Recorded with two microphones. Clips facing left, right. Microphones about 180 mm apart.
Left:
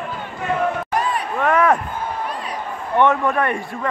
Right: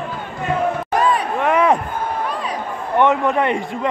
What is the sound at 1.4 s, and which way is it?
Speech, 15° right (ahead or behind).